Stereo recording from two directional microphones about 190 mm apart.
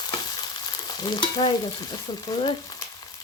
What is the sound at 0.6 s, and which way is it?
Frying, 25° left (ahead or behind).